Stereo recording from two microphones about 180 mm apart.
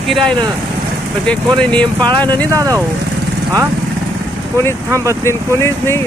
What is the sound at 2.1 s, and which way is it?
Speech, 25° right (ahead or behind).